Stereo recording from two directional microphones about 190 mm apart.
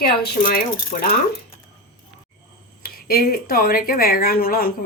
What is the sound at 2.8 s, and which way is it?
Speech, 55° left (ahead or behind).